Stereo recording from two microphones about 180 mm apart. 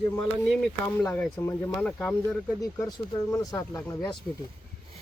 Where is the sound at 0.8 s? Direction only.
10° left (ahead or behind).